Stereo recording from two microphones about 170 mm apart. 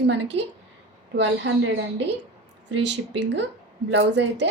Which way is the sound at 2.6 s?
90° right.